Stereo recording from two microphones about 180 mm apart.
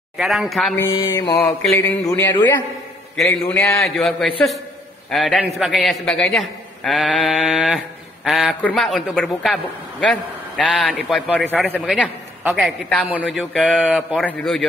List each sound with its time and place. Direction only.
0.2 s a man's voice: centre (ahead or behind)
0.7 s mantra: 20° left (ahead or behind)
1.7 s a man's voice: 15° left (ahead or behind)
11.8 s a man's voice: 5° right (ahead or behind)
13.4 s a man's voice: 5° left (ahead or behind)
13.7 s a man's voice: 5° right (ahead or behind)